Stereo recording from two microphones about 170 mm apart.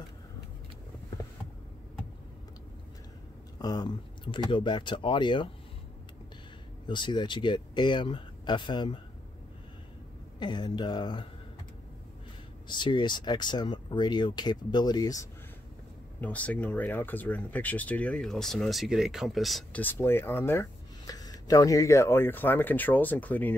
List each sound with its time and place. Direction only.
3.5 s speech: 25° left (ahead or behind)
6.9 s speech: 25° left (ahead or behind)
10.4 s speech: 25° left (ahead or behind)
12.6 s speech: 25° left (ahead or behind)
16.2 s speech: 10° left (ahead or behind)
19.8 s speech: 10° left (ahead or behind)